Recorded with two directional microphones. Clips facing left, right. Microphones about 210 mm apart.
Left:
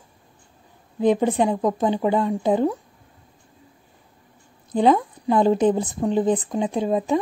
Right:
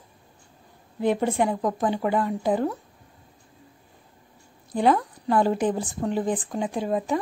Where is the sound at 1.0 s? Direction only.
15° left (ahead or behind).